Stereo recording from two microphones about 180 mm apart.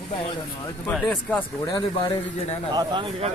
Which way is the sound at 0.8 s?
5° left (ahead or behind).